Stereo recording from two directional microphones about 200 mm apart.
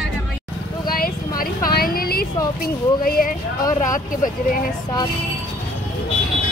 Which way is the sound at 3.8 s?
40° left (ahead or behind).